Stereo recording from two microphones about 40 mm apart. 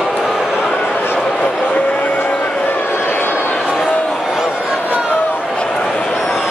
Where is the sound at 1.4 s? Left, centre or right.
Left.